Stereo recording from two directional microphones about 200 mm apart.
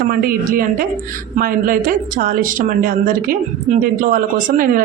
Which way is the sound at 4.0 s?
45° right (ahead or behind).